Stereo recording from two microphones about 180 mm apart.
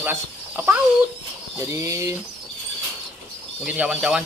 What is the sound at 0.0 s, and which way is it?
Speech, 10° right (ahead or behind).